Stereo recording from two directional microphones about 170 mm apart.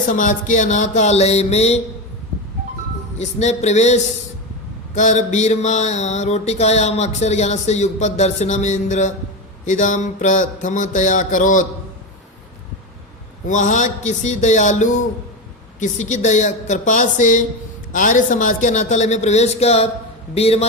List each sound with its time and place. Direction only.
0.0 s mantra: 50° left (ahead or behind)
3.2 s speech: 40° left (ahead or behind)
4.9 s mantra: 45° left (ahead or behind)
13.5 s mantra: 45° left (ahead or behind)
20.3 s speech: 35° left (ahead or behind)